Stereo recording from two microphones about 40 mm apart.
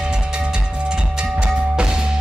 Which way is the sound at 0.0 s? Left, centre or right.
Right.